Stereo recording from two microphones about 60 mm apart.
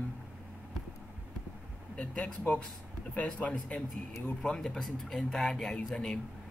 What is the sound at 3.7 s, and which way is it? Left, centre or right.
Speech, left.